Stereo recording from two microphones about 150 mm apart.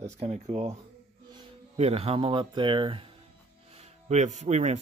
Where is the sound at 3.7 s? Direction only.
45° right (ahead or behind).